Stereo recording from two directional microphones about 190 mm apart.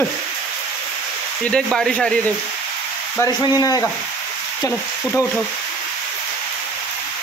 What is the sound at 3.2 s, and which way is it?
Speech, 20° left (ahead or behind).